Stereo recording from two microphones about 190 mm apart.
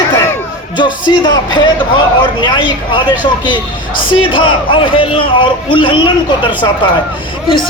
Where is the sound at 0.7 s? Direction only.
25° left (ahead or behind).